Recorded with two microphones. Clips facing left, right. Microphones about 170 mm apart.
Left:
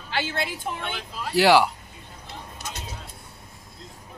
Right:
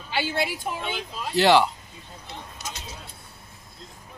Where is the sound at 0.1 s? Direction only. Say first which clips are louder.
Right 2 dB; 10° right (ahead or behind).